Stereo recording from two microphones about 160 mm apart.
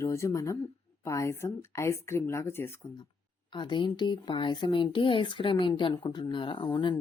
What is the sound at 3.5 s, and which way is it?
Speech, 30° left (ahead or behind).